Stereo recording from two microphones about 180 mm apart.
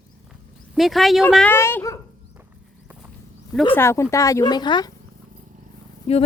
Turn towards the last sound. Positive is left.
turn(degrees=35)  # may be behind; listen again after turning